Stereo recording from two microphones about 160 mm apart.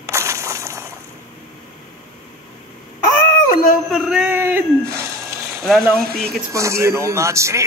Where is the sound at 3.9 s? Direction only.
5° right (ahead or behind).